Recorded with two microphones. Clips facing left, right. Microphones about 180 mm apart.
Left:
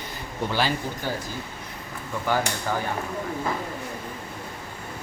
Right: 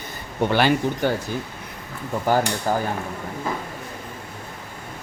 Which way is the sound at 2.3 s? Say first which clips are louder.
Right 5 dB; 35° right (ahead or behind).